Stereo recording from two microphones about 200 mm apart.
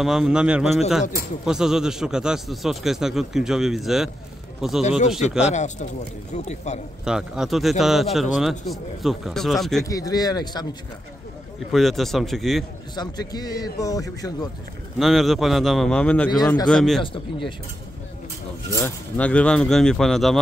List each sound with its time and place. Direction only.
0.0 s speech: centre (ahead or behind)
5.4 s speech: 35° left (ahead or behind)
7.1 s speech: 5° right (ahead or behind)
9.8 s a man's voice: 15° left (ahead or behind)
11.7 s speech: centre (ahead or behind)
12.9 s a man's voice: 20° left (ahead or behind)
15.0 s speech: centre (ahead or behind)
17.0 s a man's voice: 25° left (ahead or behind)
18.7 s speech: 10° left (ahead or behind)